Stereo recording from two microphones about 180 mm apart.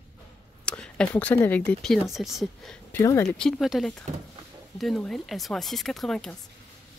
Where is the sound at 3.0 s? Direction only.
15° left (ahead or behind).